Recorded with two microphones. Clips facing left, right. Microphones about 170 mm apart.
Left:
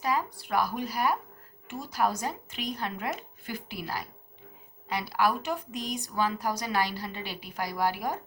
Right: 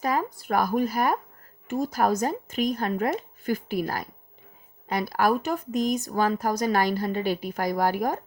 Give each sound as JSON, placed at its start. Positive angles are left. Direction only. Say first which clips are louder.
{"t": 0.0, "sound": "a woman's voice", "louder": "right 3 dB", "side_deg": -50}